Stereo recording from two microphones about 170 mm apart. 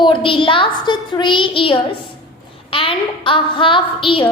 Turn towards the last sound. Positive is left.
turn(degrees=30)  # may be behind; listen again after turning